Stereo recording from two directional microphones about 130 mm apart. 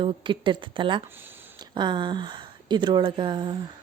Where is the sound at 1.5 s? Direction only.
35° right (ahead or behind).